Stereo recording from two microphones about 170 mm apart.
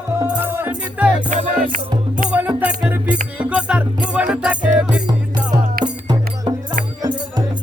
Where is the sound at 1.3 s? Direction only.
50° right (ahead or behind).